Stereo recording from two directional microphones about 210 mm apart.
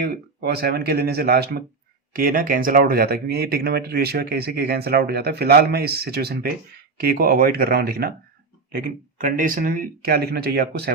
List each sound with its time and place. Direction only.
0.0 s speech: 50° right (ahead or behind)